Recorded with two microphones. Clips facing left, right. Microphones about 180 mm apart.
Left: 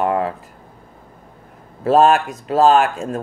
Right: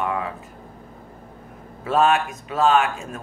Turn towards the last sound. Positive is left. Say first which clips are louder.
# left 5 dB
turn(degrees=35)  # may be behind; listen again after turning